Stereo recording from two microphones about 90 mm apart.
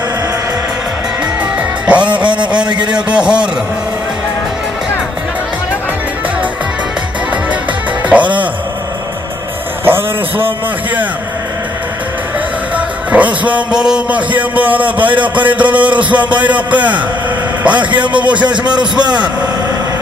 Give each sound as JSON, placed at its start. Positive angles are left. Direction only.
{"t": 1.9, "sound": "music", "side_deg": -15}
{"t": 2.6, "sound": "speech", "side_deg": -55}
{"t": 2.9, "sound": "music", "side_deg": -10}
{"t": 8.1, "sound": "music", "side_deg": -15}
{"t": 9.8, "sound": "a sound", "side_deg": -25}
{"t": 12.7, "sound": "music", "side_deg": -15}